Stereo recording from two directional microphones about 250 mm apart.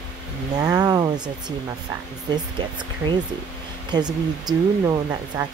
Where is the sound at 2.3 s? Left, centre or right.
Centre.